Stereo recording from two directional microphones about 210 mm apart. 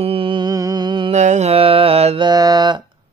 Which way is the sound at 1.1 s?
35° right (ahead or behind).